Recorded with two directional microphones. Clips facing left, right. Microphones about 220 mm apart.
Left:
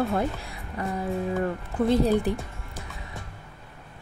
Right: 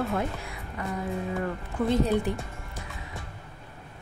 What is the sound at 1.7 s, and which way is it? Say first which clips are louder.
Speech: left 3 dB; 35° left (ahead or behind).